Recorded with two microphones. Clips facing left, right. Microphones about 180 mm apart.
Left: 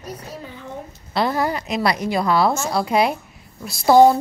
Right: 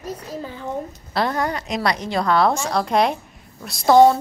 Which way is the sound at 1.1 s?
5° left (ahead or behind).